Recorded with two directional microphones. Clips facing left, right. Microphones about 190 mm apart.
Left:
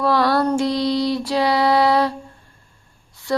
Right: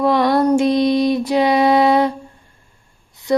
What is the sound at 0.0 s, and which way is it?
Female singing, 20° right (ahead or behind).